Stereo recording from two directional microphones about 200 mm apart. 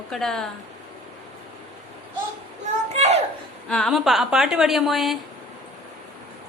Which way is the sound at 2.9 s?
30° right (ahead or behind).